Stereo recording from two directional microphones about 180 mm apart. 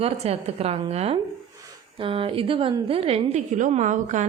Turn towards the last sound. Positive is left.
turn(degrees=-45)  # may be behind; listen again after turning